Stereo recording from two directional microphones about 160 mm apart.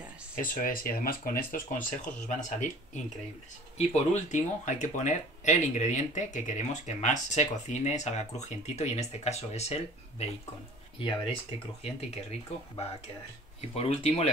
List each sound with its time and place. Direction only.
0.4 s speech: 60° left (ahead or behind); by 14.3 s 40° left (ahead or behind)